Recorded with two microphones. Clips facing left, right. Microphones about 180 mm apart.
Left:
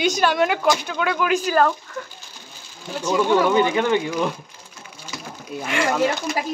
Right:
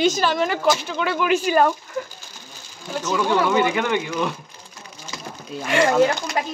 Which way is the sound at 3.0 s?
15° left (ahead or behind).